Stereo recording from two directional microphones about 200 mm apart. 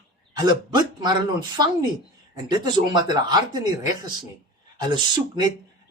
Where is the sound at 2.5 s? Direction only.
20° right (ahead or behind).